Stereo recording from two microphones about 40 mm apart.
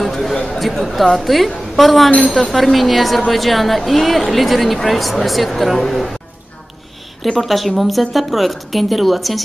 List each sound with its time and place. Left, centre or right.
0.0 s speech: centre
2.0 s speech: left
2.3 s speech: centre
7.3 s speech: centre